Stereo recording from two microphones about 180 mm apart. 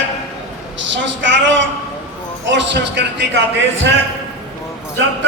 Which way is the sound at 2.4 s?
80° right.